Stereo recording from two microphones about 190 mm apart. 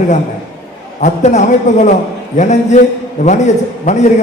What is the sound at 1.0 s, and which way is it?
A man's voice, 40° left (ahead or behind).